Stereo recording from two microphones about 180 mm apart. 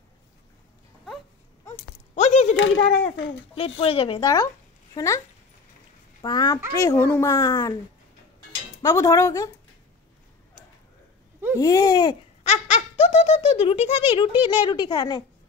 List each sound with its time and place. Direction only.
2.1 s a sound: 40° left (ahead or behind)
2.5 s speech: 90° left
3.5 s speech: 30° left (ahead or behind)
6.2 s a woman's voice: 20° left (ahead or behind)
11.5 s speech: 20° left (ahead or behind)
12.4 s speech: 40° left (ahead or behind); by 15.2 s 25° left (ahead or behind)